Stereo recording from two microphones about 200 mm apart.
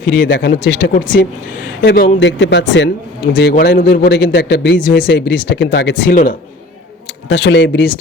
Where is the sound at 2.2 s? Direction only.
65° left (ahead or behind); by 6.3 s 45° left (ahead or behind).